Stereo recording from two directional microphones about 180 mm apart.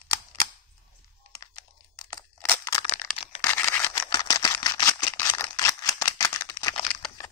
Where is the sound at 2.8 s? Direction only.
35° left (ahead or behind).